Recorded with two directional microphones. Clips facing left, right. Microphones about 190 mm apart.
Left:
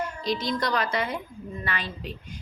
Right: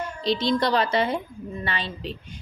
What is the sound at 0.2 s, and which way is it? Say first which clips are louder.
A woman's voice: right 7 dB; 25° right (ahead or behind).